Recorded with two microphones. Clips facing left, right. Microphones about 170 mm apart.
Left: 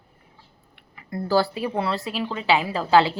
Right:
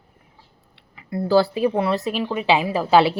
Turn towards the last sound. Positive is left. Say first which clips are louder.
# right 2 dB
turn(degrees=-15)  # may be behind; listen again after turning